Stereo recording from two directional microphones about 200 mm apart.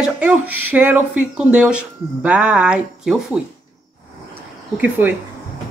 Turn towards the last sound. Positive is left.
turn(degrees=-10)  # may be behind; listen again after turning